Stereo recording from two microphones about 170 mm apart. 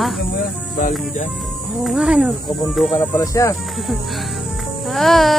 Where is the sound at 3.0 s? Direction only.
20° left (ahead or behind).